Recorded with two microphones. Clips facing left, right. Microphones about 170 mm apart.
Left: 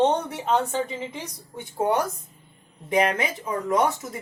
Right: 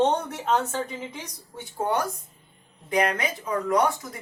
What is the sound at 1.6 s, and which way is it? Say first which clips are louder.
A woman's voice: left 3 dB; 20° left (ahead or behind).